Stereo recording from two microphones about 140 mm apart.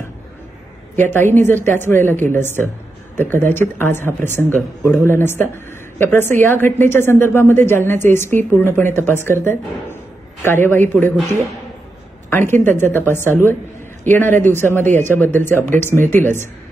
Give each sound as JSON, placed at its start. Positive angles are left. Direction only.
{"t": 0.9, "sound": "a woman's voice", "side_deg": 15}
{"t": 12.3, "sound": "a woman's voice", "side_deg": 15}